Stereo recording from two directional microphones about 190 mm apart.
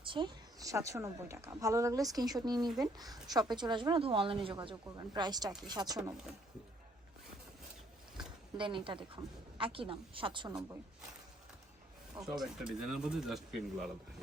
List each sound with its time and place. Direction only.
0.0 s speech: 25° right (ahead or behind)
8.5 s speech: 25° right (ahead or behind)
12.2 s speech: centre (ahead or behind)